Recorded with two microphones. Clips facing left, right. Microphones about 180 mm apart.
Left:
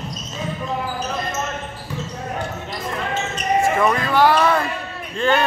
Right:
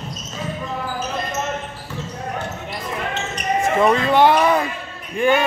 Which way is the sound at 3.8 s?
20° right (ahead or behind).